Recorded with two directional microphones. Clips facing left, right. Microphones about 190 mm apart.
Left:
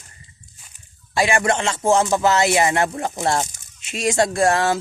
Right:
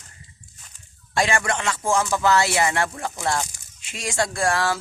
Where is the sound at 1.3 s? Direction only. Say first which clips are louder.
Left 4 dB; 25° left (ahead or behind).